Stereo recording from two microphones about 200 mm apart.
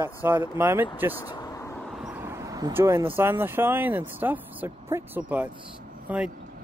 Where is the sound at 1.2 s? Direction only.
20° left (ahead or behind).